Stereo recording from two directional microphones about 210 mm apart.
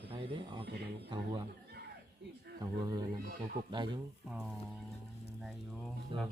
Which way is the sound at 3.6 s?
40° right (ahead or behind).